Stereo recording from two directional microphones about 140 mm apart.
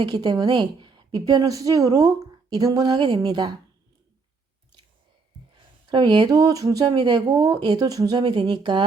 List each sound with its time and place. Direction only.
0.0 s a woman's voice: 30° right (ahead or behind)
5.9 s a woman's voice: 35° right (ahead or behind)